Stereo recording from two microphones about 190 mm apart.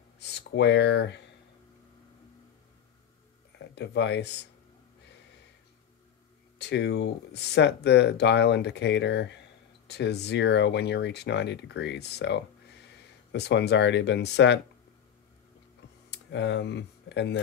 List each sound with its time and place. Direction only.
0.2 s speech: 60° left (ahead or behind)
3.5 s speech: 65° left (ahead or behind)
6.6 s speech: 65° left (ahead or behind)
16.1 s speech: 65° left (ahead or behind)